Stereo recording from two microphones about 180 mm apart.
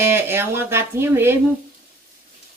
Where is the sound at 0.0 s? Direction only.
15° right (ahead or behind).